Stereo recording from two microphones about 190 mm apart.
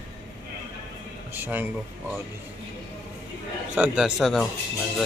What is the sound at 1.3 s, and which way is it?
Speech, 10° right (ahead or behind).